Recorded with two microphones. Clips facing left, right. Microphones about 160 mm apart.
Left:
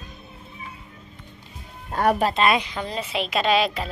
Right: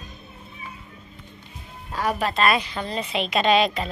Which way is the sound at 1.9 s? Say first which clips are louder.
Left 5 dB; 55° left (ahead or behind).